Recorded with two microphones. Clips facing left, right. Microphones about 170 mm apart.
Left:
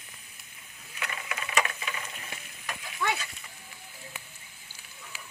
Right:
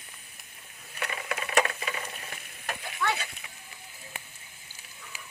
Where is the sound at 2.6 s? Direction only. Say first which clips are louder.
Right 1 dB; 50° right (ahead or behind).